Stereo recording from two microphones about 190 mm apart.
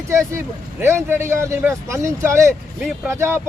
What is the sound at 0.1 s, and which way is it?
Speech, 15° right (ahead or behind).